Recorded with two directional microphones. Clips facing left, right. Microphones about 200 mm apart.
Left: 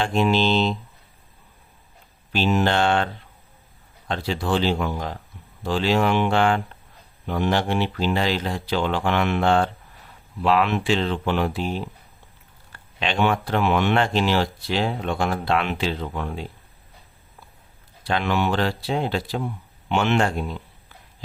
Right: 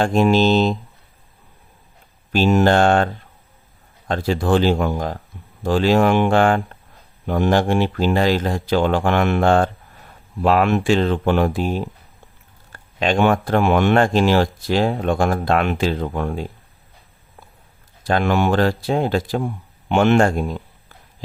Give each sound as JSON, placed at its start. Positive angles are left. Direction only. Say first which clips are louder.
{"t": 0.0, "sound": "speech", "louder": "right 5 dB", "side_deg": -45}
{"t": 2.3, "sound": "speech", "louder": "right 6 dB", "side_deg": -45}
{"t": 4.1, "sound": "speech", "louder": "right 6 dB", "side_deg": -45}
{"t": 18.0, "sound": "speech", "louder": "right 5 dB", "side_deg": -45}